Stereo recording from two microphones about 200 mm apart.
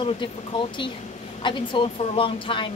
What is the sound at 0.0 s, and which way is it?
A woman's voice, 25° left (ahead or behind).